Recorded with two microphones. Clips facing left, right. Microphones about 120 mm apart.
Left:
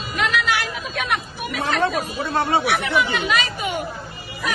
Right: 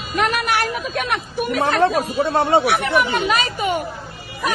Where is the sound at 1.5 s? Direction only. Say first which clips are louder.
Right 4 dB; 50° right (ahead or behind).